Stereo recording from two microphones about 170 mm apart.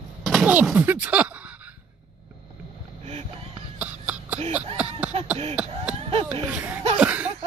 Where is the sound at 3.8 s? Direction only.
5° right (ahead or behind).